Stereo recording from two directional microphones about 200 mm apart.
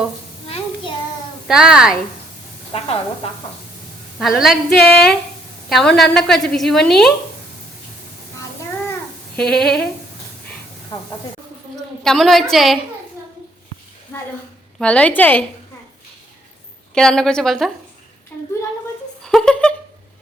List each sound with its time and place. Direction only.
0.4 s child singing: 30° left (ahead or behind)
1.5 s a woman's voice: 5° right (ahead or behind)
4.2 s a woman's voice: centre (ahead or behind)
8.9 s child singing: 5° left (ahead or behind)
10.9 s speech: 20° left (ahead or behind)
12.0 s a woman's voice: centre (ahead or behind)
14.1 s a sound: 10° left (ahead or behind)
14.8 s a woman's voice: 5° left (ahead or behind)
16.9 s a woman's voice: 5° left (ahead or behind)
19.2 s a sound: 5° left (ahead or behind)